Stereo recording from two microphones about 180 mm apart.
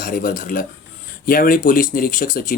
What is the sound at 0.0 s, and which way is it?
Speech, 50° left (ahead or behind).